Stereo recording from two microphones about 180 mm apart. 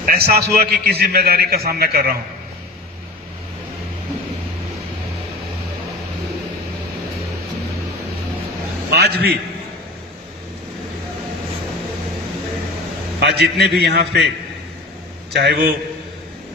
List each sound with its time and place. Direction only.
0.0 s a man's voice: 60° right (ahead or behind)
8.9 s a man's voice: 65° right (ahead or behind)
13.1 s a man's voice: 65° right (ahead or behind)
15.3 s a man's voice: 65° right (ahead or behind)